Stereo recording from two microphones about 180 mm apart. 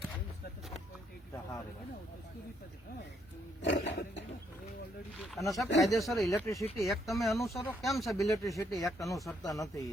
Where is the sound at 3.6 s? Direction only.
75° left (ahead or behind).